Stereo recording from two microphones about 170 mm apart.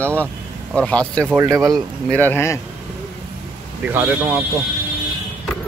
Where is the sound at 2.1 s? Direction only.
10° left (ahead or behind).